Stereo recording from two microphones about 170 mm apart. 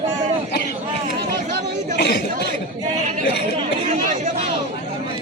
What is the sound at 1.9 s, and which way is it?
Chatter, 80° left.